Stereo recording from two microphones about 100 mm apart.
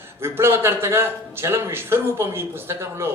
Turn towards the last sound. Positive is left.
turn(degrees=-25)  # may be behind; listen again after turning